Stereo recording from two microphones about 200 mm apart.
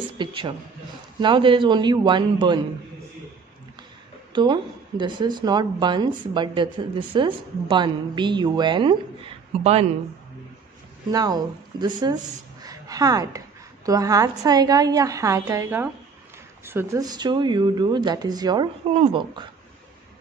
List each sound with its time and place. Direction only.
0.2 s a woman's voice: 25° right (ahead or behind)
4.3 s a woman's voice: 25° right (ahead or behind)
11.1 s a woman's voice: 20° right (ahead or behind)
12.6 s a sound: 20° right (ahead or behind)
13.8 s a woman's voice: 15° right (ahead or behind)